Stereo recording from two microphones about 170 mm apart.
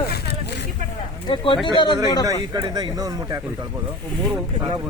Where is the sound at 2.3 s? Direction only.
20° right (ahead or behind).